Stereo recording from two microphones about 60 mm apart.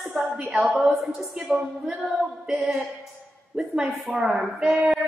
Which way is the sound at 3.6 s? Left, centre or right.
Centre.